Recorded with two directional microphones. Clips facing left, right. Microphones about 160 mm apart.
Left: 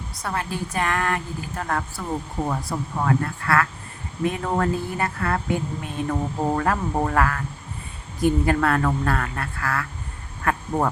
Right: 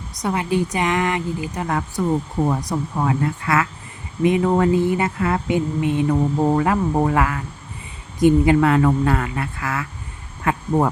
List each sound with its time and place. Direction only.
0.2 s speech: 15° right (ahead or behind)